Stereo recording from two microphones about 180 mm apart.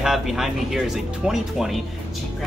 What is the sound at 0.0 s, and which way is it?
Speech, centre (ahead or behind).